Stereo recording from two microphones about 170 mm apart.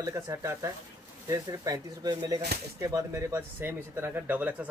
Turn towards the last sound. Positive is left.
turn(degrees=-10)  # may be behind; listen again after turning